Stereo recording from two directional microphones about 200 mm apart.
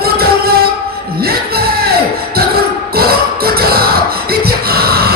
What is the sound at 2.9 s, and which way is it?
Beatboxing, 50° right (ahead or behind).